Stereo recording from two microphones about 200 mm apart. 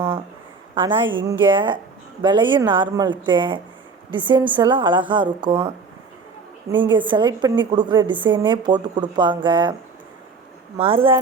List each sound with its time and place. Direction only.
1.2 s a woman's voice: 20° right (ahead or behind)
6.8 s a woman's voice: 25° right (ahead or behind)
10.8 s a woman's voice: 25° right (ahead or behind)